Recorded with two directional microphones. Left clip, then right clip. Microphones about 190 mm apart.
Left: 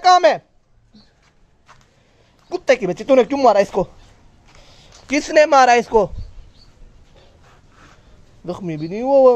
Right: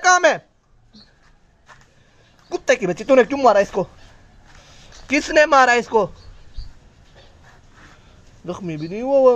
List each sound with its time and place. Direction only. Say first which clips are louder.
0.0 s a sound: left 2 dB; centre (ahead or behind)
2.5 s speech: left 2 dB; 5° left (ahead or behind)
3.3 s speech: left 1 dB; 20° left (ahead or behind)
8.5 s speech: left 2 dB; 20° left (ahead or behind)